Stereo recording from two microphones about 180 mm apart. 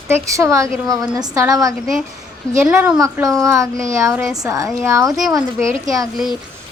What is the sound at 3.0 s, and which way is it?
A woman's voice, 20° right (ahead or behind).